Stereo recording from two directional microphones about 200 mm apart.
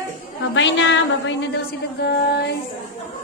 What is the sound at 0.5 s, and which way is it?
A woman's voice, 65° left (ahead or behind).